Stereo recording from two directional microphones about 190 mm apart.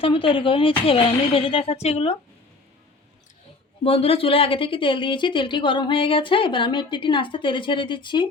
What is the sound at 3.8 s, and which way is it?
Speech, 30° left (ahead or behind).